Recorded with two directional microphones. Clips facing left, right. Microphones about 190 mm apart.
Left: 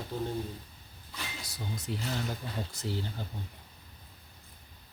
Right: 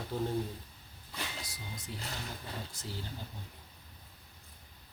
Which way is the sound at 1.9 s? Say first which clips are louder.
Left 7 dB; 80° left.